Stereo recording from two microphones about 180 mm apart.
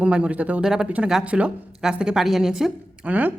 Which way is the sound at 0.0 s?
5° right (ahead or behind).